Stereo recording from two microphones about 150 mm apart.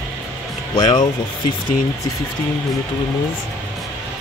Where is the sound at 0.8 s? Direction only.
50° left (ahead or behind).